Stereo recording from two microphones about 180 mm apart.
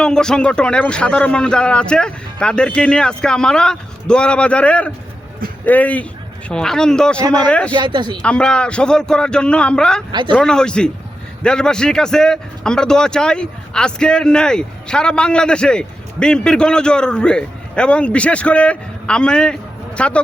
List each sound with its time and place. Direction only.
0.0 s a man's voice: 5° left (ahead or behind)
7.7 s speech: 25° right (ahead or behind)
8.2 s a man's voice: 5° left (ahead or behind)
10.1 s speech: 25° right (ahead or behind)
10.3 s a man's voice: 5° left (ahead or behind)